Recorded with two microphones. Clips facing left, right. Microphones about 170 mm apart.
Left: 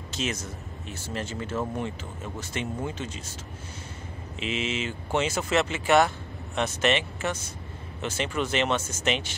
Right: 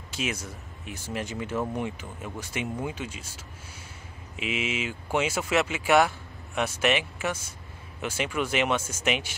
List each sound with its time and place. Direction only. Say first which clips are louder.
0.1 s speech: left 1 dB; 10° right (ahead or behind)
4.4 s speech: even; 10° right (ahead or behind)